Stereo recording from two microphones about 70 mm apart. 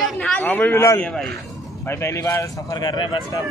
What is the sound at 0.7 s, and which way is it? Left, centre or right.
A man's voice, left.